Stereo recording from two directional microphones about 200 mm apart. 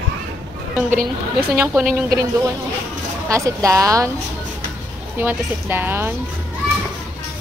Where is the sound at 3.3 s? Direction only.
15° right (ahead or behind).